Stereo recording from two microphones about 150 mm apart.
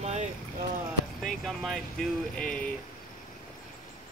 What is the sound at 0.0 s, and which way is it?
Boat, 50° right (ahead or behind).